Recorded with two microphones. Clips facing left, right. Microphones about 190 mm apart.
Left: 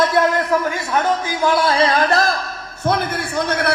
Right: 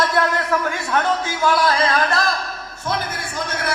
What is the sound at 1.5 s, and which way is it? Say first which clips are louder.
Speech: left 2 dB; 30° left (ahead or behind).